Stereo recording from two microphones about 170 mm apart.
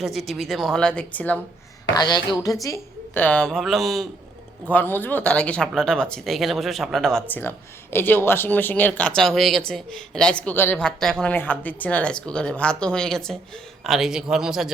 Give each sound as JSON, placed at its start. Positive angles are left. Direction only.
{"t": 0.0, "sound": "speech", "side_deg": 0}
{"t": 1.9, "sound": "speech", "side_deg": 25}
{"t": 4.7, "sound": "speech", "side_deg": 10}